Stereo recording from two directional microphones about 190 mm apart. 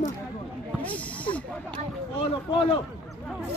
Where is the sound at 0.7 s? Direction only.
5° left (ahead or behind).